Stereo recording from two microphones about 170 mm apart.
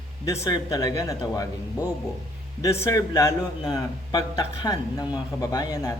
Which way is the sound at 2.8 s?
20° left (ahead or behind).